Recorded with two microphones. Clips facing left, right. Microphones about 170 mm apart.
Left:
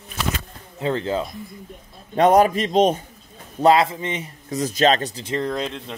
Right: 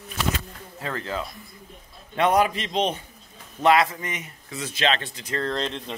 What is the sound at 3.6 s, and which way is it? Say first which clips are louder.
Speech: left 3 dB; 30° left (ahead or behind).